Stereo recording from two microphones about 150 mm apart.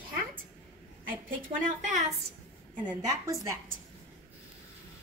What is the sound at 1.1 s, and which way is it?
Speech, 65° right (ahead or behind).